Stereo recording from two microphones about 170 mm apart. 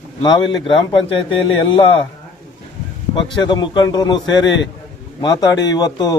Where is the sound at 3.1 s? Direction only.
30° left (ahead or behind).